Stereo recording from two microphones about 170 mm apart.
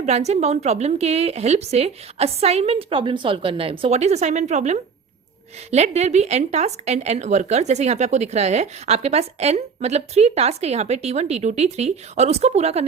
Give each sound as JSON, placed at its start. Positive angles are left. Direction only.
{"t": 0.0, "sound": "speech", "side_deg": -40}